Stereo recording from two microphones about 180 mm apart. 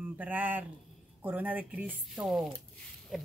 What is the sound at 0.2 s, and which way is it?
A woman's voice, 10° right (ahead or behind).